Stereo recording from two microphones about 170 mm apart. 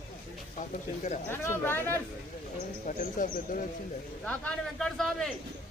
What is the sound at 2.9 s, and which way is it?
Speech, 50° left (ahead or behind).